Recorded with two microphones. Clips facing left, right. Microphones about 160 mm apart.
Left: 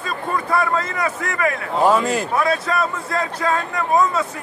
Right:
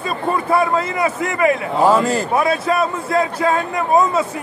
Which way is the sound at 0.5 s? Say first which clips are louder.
Right 3 dB; 20° right (ahead or behind).